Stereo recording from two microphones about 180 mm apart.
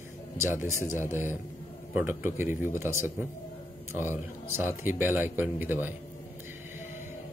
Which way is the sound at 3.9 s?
10° right (ahead or behind).